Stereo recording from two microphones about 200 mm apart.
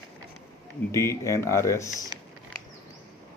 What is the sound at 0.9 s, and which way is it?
Speech, 15° left (ahead or behind).